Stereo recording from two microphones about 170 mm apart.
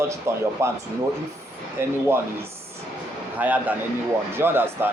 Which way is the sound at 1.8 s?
15° right (ahead or behind).